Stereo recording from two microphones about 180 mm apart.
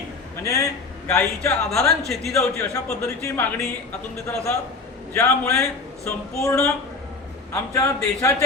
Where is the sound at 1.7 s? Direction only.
Centre (ahead or behind).